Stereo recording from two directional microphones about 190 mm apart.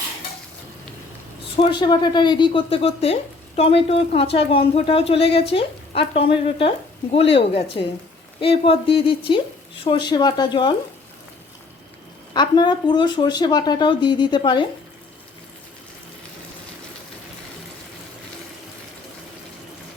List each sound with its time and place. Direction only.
1.7 s speech: 25° left (ahead or behind)
12.3 s speech: 20° left (ahead or behind)